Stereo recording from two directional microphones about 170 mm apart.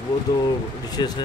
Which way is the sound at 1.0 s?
25° left (ahead or behind).